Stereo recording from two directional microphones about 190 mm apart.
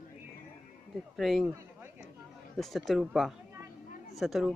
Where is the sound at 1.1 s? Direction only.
Centre (ahead or behind).